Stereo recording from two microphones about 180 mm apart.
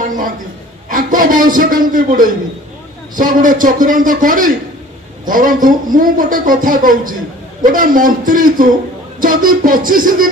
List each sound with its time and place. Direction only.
0.8 s a man's voice: 50° right (ahead or behind)